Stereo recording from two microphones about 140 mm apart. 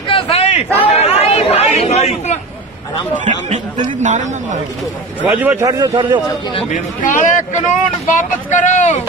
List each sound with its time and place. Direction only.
0.1 s a sound: 45° left (ahead or behind)
0.7 s speech: 45° left (ahead or behind)
3.3 s speech: 60° right (ahead or behind)
5.2 s a man's voice: 10° right (ahead or behind)
5.6 s a man's voice: 25° right (ahead or behind)
6.7 s speech: 70° left (ahead or behind)